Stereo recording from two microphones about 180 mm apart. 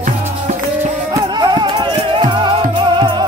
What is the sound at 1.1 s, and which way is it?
Music, 20° right (ahead or behind).